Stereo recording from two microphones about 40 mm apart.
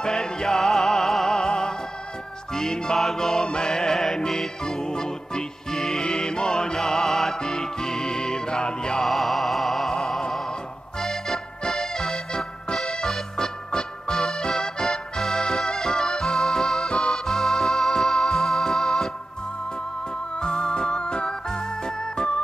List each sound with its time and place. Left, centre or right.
0.0 s music: centre
9.0 s music: centre
11.0 s accordion: centre
12.7 s music: centre
20.3 s organ: centre